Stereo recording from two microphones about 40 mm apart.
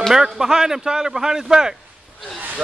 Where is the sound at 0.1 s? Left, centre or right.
Centre.